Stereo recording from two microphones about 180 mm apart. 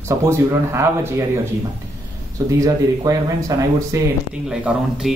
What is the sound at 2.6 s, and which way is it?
Speech, 20° right (ahead or behind).